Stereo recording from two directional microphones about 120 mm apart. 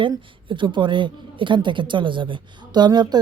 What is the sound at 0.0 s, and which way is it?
Speech, 40° right (ahead or behind).